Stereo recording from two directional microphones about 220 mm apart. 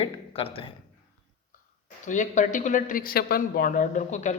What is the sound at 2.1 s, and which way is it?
Speech, 35° left (ahead or behind).